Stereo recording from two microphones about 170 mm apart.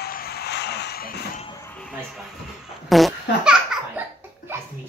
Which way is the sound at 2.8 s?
Centre (ahead or behind).